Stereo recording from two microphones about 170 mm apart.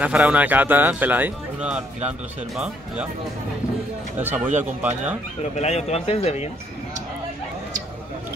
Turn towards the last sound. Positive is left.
turn(degrees=35)  # may be behind; listen again after turning